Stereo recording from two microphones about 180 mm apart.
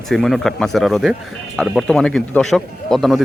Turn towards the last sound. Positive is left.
turn(degrees=0)  # may be behind; listen again after turning